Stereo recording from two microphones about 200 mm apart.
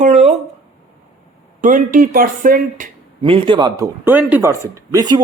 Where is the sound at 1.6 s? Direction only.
40° right (ahead or behind).